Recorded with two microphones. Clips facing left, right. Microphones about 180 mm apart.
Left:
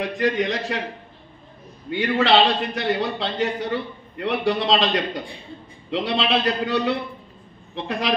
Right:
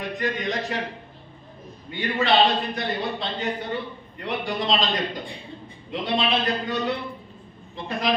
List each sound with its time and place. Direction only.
0.0 s a man's voice: 70° left (ahead or behind)
1.9 s a man's voice: 75° left (ahead or behind)